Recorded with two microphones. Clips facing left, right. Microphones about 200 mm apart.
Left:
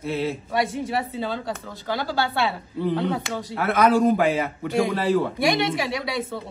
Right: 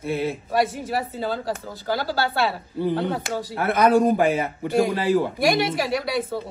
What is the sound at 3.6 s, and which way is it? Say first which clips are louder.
Speech: even; 20° right (ahead or behind).